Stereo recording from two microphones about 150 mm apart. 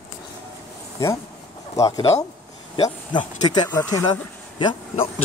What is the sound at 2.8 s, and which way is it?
Speech, 25° left (ahead or behind).